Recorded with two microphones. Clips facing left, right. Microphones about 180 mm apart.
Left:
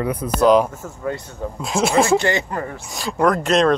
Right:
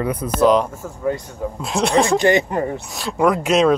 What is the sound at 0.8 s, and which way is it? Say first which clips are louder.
Speech: right 4 dB; 15° right (ahead or behind).